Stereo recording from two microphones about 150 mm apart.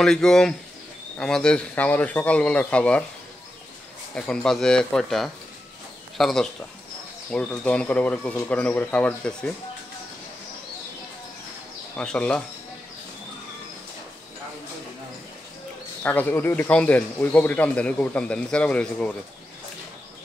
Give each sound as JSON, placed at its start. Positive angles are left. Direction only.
{"t": 0.0, "sound": "speech", "side_deg": 5}
{"t": 4.1, "sound": "speech", "side_deg": 5}
{"t": 11.9, "sound": "speech", "side_deg": 5}
{"t": 16.0, "sound": "speech", "side_deg": 10}